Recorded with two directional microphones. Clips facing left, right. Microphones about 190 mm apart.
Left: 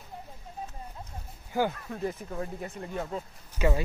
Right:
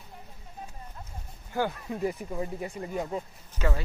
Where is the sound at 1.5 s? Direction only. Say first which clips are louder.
Left 1 dB; 5° left (ahead or behind).